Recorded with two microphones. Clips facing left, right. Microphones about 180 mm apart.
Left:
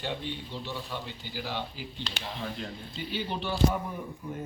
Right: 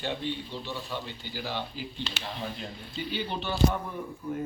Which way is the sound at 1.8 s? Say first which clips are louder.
Right 3 dB; 10° left (ahead or behind).